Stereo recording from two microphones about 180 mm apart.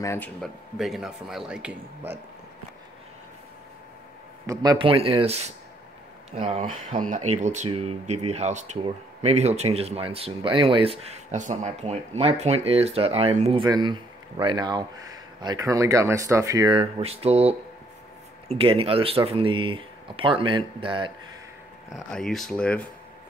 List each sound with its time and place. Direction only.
0.0 s speech: 15° left (ahead or behind)
0.4 s speech: centre (ahead or behind)
4.5 s speech: 20° right (ahead or behind)
6.6 s speech: 45° right (ahead or behind); by 21.1 s 25° right (ahead or behind)
21.9 s speech: centre (ahead or behind)